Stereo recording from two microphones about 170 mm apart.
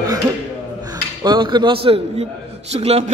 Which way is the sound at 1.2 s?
25° right (ahead or behind).